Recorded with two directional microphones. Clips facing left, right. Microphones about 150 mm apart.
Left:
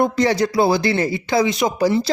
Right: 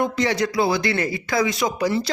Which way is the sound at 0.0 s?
35° left (ahead or behind).